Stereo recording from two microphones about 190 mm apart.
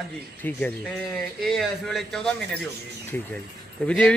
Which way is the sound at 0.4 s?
10° left (ahead or behind).